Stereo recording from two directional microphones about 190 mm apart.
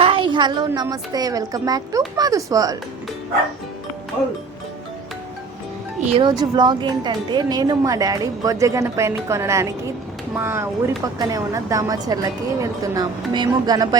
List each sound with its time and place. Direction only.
0.0 s a sound: 25° right (ahead or behind)
0.7 s a woman's voice: 20° right (ahead or behind)
6.1 s a woman's voice: 20° right (ahead or behind)